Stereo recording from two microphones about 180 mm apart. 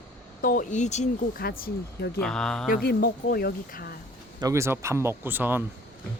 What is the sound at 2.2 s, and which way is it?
Speech, 5° left (ahead or behind).